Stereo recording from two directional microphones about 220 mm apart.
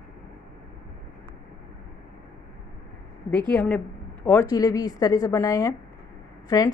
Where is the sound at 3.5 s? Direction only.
5° left (ahead or behind).